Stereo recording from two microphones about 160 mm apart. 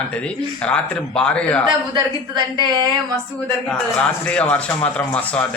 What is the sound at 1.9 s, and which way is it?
Speech, 25° right (ahead or behind).